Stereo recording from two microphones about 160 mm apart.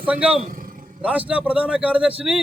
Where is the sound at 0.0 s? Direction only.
10° right (ahead or behind).